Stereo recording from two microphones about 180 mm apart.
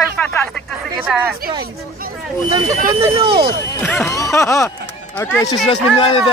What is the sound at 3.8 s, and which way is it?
Speech, 10° left (ahead or behind).